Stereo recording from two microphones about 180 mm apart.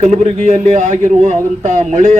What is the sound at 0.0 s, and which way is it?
A man's voice, 40° right (ahead or behind).